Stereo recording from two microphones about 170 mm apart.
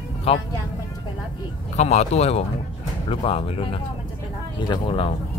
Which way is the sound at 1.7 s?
40° left (ahead or behind).